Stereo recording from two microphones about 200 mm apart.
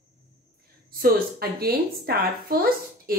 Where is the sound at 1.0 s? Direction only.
50° right (ahead or behind).